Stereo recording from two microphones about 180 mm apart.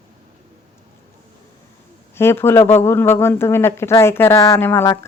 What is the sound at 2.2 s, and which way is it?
Speech, 15° left (ahead or behind).